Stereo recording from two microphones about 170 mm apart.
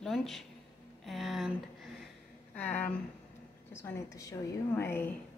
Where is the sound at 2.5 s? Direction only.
10° left (ahead or behind).